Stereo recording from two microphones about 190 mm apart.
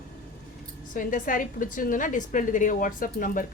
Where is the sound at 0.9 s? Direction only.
45° left (ahead or behind).